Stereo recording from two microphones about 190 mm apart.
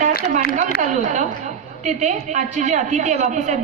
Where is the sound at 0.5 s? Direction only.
40° right (ahead or behind).